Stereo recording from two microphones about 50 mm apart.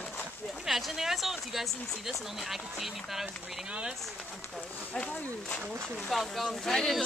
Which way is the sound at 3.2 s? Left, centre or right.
Right.